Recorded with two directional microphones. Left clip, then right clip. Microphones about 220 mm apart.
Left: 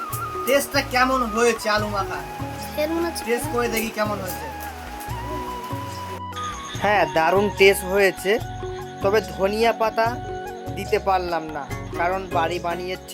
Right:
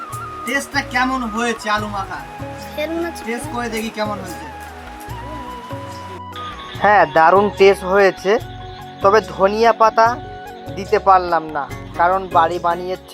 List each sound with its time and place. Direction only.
0.5 s speech: 15° left (ahead or behind)
2.7 s speech: centre (ahead or behind)
3.6 s speech: 15° left (ahead or behind)
6.8 s speech: 10° left (ahead or behind)